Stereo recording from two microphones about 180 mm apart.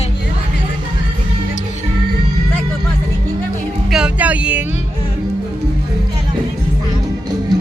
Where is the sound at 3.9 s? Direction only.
5° right (ahead or behind).